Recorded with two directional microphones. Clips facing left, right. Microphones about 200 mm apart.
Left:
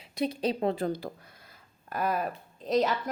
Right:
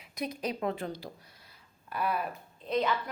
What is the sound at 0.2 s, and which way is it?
Speech, 30° left (ahead or behind).